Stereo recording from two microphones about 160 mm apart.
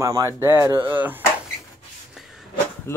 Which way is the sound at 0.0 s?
20° right (ahead or behind).